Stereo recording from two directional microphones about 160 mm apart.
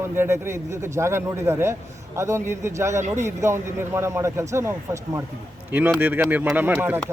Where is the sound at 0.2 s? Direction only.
15° right (ahead or behind).